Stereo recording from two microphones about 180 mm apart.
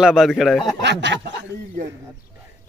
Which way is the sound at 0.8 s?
75° right (ahead or behind).